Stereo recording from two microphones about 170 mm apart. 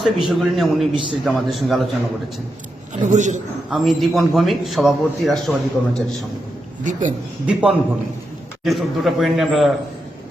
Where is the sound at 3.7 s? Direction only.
Centre (ahead or behind).